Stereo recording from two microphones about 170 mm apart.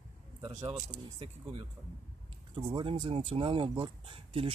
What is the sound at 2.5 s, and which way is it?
Speech, 30° right (ahead or behind).